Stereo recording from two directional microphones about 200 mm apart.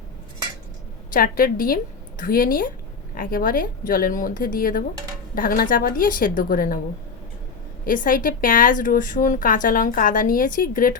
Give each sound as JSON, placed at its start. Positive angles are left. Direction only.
{"t": 1.1, "sound": "a woman's voice", "side_deg": 45}
{"t": 7.9, "sound": "speech", "side_deg": 45}